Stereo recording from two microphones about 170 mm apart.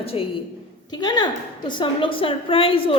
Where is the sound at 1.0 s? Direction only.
25° left (ahead or behind).